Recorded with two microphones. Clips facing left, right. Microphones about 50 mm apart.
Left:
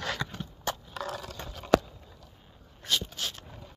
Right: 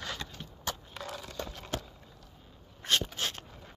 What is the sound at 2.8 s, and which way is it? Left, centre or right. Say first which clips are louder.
Dog: right 1 dB; right.